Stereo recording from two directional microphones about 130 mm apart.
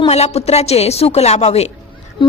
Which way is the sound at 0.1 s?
55° left (ahead or behind).